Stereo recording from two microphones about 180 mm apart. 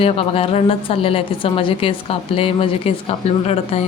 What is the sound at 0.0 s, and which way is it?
A woman's voice, 30° left (ahead or behind).